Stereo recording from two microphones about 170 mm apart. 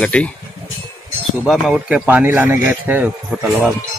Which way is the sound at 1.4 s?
Centre (ahead or behind).